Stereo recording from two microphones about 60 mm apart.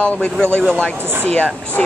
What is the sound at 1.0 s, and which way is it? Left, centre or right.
Speech, right.